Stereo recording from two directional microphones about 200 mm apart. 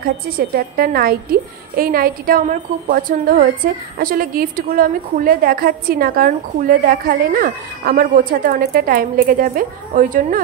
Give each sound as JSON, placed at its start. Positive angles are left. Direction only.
{"t": 0.0, "sound": "a woman's voice", "side_deg": -50}